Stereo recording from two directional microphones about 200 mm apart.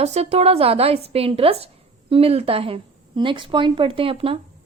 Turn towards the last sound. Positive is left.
turn(degrees=-25)  # may be behind; listen again after turning